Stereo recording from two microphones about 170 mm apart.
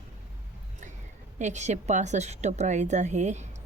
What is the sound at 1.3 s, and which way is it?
A woman's voice, 45° right (ahead or behind).